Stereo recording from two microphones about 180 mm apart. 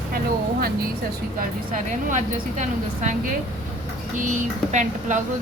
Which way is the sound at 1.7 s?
40° right (ahead or behind).